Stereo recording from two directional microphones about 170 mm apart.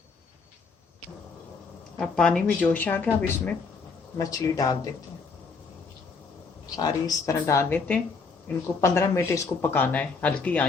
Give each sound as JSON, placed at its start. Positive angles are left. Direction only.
{"t": 2.0, "sound": "speech", "side_deg": 5}
{"t": 4.2, "sound": "speech", "side_deg": 20}
{"t": 6.7, "sound": "speech", "side_deg": 20}